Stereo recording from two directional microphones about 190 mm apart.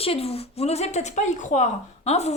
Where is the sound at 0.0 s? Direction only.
30° left (ahead or behind).